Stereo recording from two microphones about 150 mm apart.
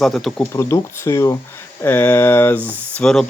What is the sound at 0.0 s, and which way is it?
Speech, centre (ahead or behind).